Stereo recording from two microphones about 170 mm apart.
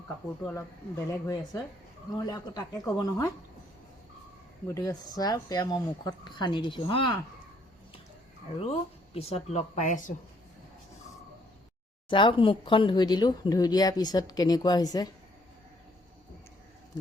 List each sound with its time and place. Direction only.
0.4 s speech: 15° left (ahead or behind)
4.7 s speech: 20° left (ahead or behind)
8.5 s speech: 35° left (ahead or behind)
12.0 s speech: 30° left (ahead or behind)